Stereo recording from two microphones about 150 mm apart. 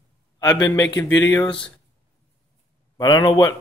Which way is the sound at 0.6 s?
25° left (ahead or behind).